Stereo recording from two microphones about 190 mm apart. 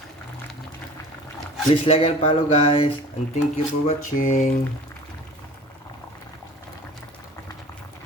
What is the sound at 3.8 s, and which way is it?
Mantra, 45° left (ahead or behind).